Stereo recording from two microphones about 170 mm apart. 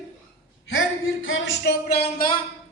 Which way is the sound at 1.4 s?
80° left.